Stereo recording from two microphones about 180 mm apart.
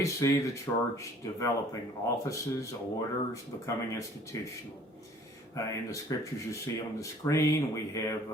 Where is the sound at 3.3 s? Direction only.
15° left (ahead or behind).